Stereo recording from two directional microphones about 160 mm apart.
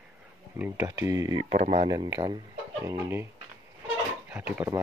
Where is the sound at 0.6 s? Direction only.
20° right (ahead or behind).